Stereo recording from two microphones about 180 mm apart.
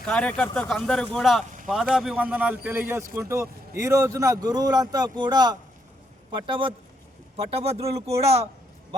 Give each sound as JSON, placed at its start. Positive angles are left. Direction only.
{"t": 0.0, "sound": "speech", "side_deg": 5}